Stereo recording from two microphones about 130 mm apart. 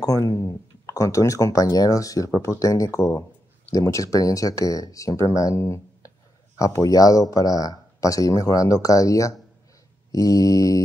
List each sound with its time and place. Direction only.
0.0 s speech: 25° left (ahead or behind)